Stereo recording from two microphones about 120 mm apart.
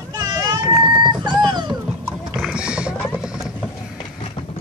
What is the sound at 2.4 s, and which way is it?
Clip-clop, 5° right (ahead or behind).